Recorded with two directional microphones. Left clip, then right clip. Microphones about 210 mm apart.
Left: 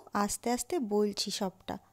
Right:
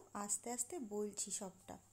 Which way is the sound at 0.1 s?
35° left (ahead or behind).